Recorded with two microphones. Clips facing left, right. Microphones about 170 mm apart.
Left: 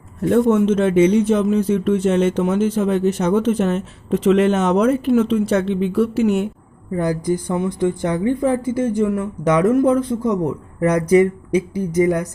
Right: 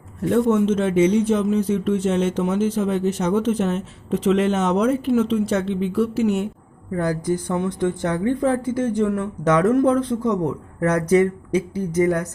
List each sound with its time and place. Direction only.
0.2 s speech: 50° left (ahead or behind)
6.9 s a woman's voice: 15° left (ahead or behind)